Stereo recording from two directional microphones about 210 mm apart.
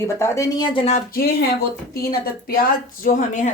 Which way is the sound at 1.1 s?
45° left (ahead or behind).